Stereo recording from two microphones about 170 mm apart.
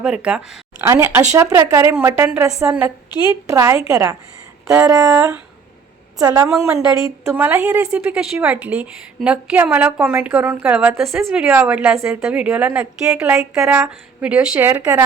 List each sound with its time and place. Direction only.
0.0 s speech: 5° right (ahead or behind)
0.9 s a woman's voice: 15° right (ahead or behind)
6.6 s a woman's voice: 15° right (ahead or behind)